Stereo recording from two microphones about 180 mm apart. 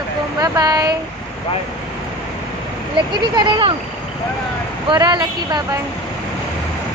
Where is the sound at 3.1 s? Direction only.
25° right (ahead or behind).